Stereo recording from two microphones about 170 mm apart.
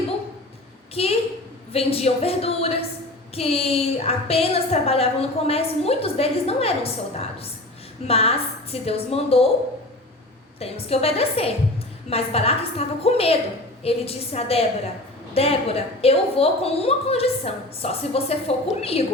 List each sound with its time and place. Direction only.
1.0 s a woman's voice: 35° left (ahead or behind)
10.6 s a woman's voice: 35° left (ahead or behind)